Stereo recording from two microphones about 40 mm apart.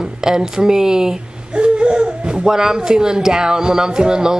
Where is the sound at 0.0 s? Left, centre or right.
Centre.